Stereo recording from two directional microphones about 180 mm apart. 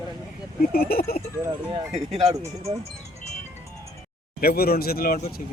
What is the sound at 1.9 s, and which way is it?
Speech, 35° right (ahead or behind).